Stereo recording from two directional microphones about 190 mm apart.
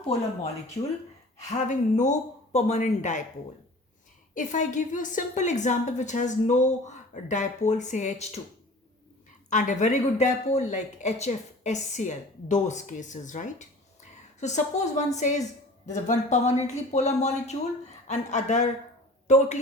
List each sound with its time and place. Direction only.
1.5 s speech: 40° left (ahead or behind)
4.4 s speech: 40° left (ahead or behind)
9.5 s speech: 40° left (ahead or behind)